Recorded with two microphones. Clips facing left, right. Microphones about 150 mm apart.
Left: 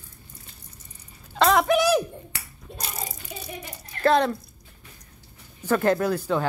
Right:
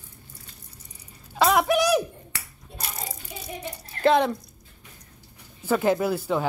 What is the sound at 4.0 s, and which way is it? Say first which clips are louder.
Speech: even; 15° right (ahead or behind).